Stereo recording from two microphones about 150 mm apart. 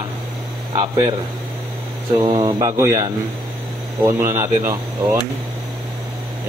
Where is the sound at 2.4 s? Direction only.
25° right (ahead or behind).